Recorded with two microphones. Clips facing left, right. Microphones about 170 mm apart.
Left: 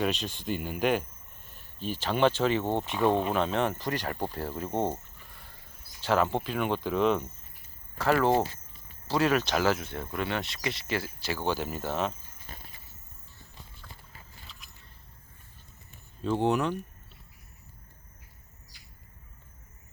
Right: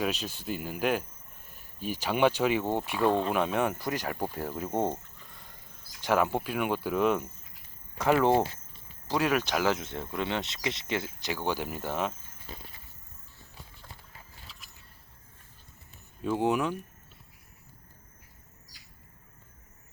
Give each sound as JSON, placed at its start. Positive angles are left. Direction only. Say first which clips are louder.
{"t": 0.0, "sound": "speech", "louder": "left 2 dB", "side_deg": -5}
{"t": 3.0, "sound": "speech", "louder": "even", "side_deg": 10}
{"t": 3.3, "sound": "speech", "louder": "even", "side_deg": -10}
{"t": 6.0, "sound": "speech", "louder": "even", "side_deg": -10}
{"t": 7.9, "sound": "speech", "louder": "right 1 dB", "side_deg": -15}
{"t": 16.2, "sound": "speech", "louder": "left 1 dB", "side_deg": -10}